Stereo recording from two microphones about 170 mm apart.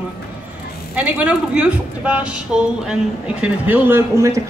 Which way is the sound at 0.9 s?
10° right (ahead or behind).